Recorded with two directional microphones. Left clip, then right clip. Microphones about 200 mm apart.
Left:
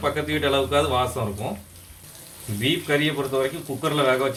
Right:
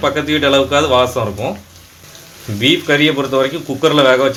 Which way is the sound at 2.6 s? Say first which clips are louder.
Right 10 dB; 45° right (ahead or behind).